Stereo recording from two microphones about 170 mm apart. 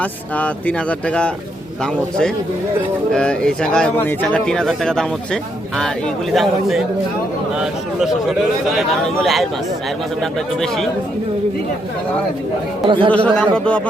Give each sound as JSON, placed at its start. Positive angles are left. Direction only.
{"t": 0.0, "sound": "speech", "side_deg": 10}
{"t": 12.9, "sound": "speech", "side_deg": -30}
{"t": 13.1, "sound": "speech", "side_deg": 5}